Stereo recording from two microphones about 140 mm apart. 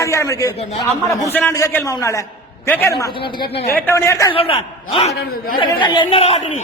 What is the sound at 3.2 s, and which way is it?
Speech, 40° left (ahead or behind).